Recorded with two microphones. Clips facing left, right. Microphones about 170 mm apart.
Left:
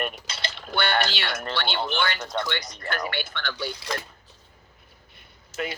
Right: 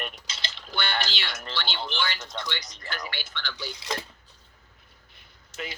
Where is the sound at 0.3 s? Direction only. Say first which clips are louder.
Left 6 dB; 55° left (ahead or behind).